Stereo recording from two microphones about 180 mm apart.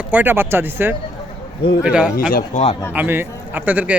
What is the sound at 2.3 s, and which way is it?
Speech, 50° left (ahead or behind).